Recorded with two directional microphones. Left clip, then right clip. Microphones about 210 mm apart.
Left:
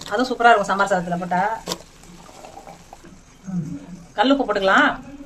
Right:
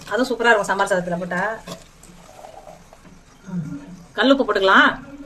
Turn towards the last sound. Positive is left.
turn(degrees=-15)  # may be behind; listen again after turning